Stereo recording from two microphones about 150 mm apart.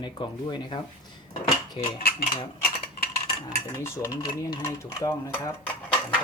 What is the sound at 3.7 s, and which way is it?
Stir, 20° left (ahead or behind).